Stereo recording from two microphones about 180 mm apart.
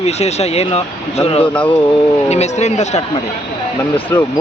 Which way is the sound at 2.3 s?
40° left (ahead or behind).